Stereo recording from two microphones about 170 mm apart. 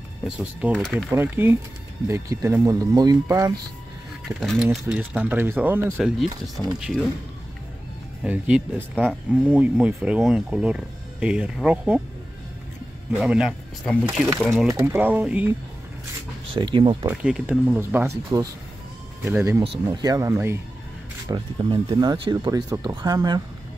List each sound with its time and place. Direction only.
0.4 s speech: 5° right (ahead or behind)
1.1 s speech: 10° right (ahead or behind)
4.4 s speech: centre (ahead or behind)
8.2 s speech: 5° right (ahead or behind)
13.2 s speech: 5° right (ahead or behind)
14.7 s speech: 15° right (ahead or behind)
16.5 s speech: 30° right (ahead or behind)
17.0 s speech: 5° right (ahead or behind)
19.6 s speech: 30° right (ahead or behind)
21.3 s speech: 30° right (ahead or behind)